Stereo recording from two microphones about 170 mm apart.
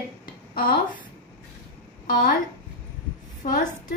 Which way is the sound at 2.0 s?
55° left (ahead or behind).